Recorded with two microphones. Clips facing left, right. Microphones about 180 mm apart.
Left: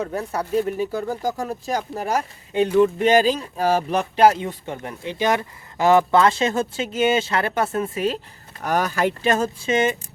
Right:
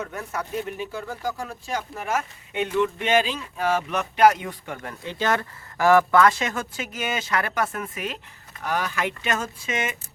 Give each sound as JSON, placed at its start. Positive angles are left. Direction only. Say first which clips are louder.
{"t": 0.0, "sound": "speech", "louder": "left 6 dB", "side_deg": 35}
{"t": 8.6, "sound": "speech", "louder": "left 5 dB", "side_deg": 45}